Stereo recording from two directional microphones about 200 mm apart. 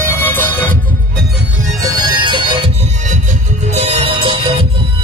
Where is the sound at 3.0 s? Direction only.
40° right (ahead or behind).